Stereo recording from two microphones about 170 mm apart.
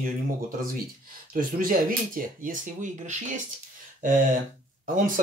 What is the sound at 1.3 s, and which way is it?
Speech, 55° right (ahead or behind).